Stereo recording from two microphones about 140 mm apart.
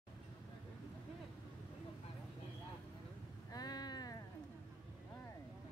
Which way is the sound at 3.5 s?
30° left (ahead or behind).